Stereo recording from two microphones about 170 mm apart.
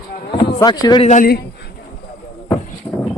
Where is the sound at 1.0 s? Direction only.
50° left (ahead or behind).